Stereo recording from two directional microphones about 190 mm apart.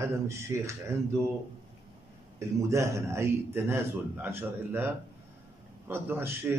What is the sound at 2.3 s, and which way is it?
A man's voice, 15° right (ahead or behind).